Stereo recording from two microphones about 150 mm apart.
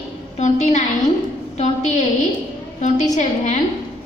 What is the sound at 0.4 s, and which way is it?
A woman's voice, 50° left (ahead or behind).